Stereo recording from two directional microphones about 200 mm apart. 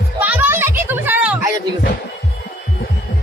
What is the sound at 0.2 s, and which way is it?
Children playing, 10° right (ahead or behind).